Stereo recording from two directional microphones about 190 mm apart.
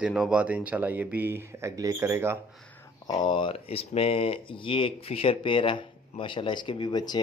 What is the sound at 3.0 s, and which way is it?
Speech, 20° left (ahead or behind).